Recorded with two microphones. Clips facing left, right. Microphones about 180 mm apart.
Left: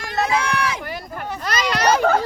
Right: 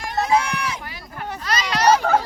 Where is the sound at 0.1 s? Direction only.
80° left.